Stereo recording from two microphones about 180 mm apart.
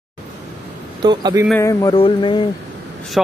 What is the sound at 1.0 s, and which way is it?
Speech, 25° right (ahead or behind).